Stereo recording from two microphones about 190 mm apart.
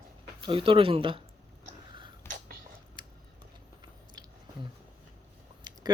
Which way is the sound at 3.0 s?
25° right (ahead or behind).